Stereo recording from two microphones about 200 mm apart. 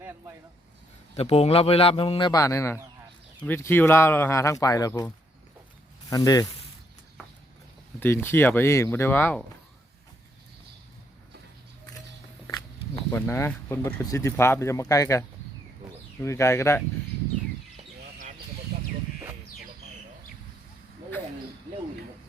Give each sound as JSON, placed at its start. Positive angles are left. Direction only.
{"t": 1.1, "sound": "a man's voice", "side_deg": 30}
{"t": 7.9, "sound": "speech", "side_deg": 10}
{"t": 13.1, "sound": "speech", "side_deg": 10}
{"t": 16.2, "sound": "speech", "side_deg": 15}
{"t": 18.7, "sound": "a sound", "side_deg": -50}